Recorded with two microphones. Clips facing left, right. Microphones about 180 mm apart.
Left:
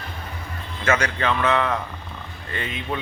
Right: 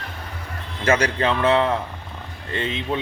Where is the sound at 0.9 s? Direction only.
35° right (ahead or behind).